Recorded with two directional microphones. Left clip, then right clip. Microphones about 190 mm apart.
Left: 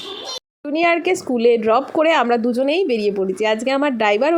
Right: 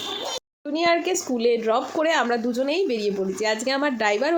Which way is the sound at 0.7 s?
35° left (ahead or behind).